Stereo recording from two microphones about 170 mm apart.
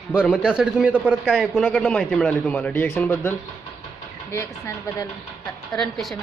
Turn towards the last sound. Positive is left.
turn(degrees=0)  # may be behind; listen again after turning